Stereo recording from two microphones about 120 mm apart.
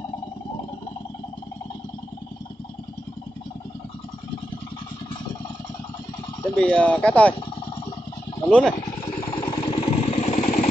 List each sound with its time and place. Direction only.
6.5 s speech: 10° left (ahead or behind)
8.5 s speech: 10° left (ahead or behind)
9.3 s vehicle: 40° left (ahead or behind)
9.8 s vehicle: 70° left (ahead or behind)